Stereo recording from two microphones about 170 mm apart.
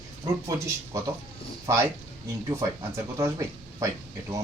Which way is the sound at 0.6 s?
15° right (ahead or behind).